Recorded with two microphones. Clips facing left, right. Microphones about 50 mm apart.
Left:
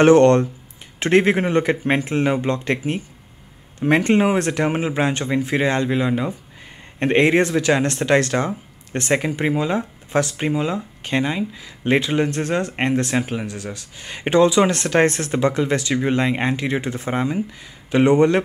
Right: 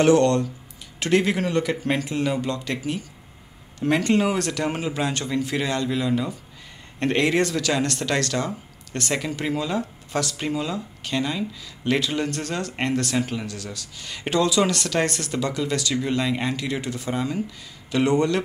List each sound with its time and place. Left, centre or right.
0.0 s speech: left